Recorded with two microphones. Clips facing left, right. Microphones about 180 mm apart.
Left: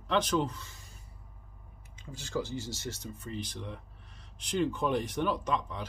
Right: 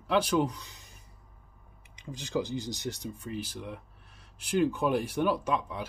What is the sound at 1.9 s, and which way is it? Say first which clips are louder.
Speech: right 3 dB; 15° right (ahead or behind).